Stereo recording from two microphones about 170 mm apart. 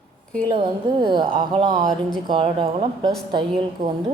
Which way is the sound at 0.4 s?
25° right (ahead or behind).